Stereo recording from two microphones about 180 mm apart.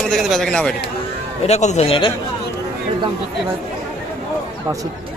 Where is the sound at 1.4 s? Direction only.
40° left (ahead or behind).